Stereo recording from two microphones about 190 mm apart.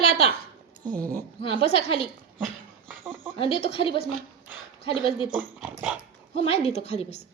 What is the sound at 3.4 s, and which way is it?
A woman's voice, 30° left (ahead or behind).